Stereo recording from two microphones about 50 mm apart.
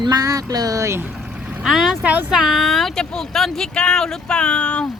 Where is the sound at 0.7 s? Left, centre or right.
Right.